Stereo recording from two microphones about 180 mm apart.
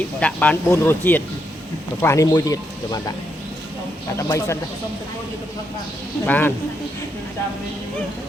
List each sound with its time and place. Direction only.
0.2 s speech: 5° left (ahead or behind)
4.2 s speech: 15° left (ahead or behind)
6.2 s speech: 10° left (ahead or behind)